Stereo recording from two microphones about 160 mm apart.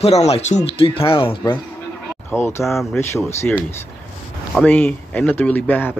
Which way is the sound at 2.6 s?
Centre (ahead or behind).